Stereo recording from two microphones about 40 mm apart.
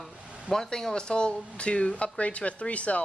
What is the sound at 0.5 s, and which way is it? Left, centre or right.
A woman's voice, centre.